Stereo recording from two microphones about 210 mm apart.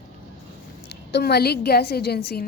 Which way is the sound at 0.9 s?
55° left (ahead or behind).